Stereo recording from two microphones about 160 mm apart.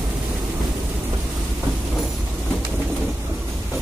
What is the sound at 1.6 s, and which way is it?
Train, centre (ahead or behind).